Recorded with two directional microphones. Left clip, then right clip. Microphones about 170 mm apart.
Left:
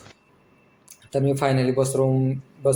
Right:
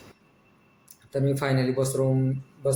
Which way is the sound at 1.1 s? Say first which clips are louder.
Left 4 dB; 10° left (ahead or behind).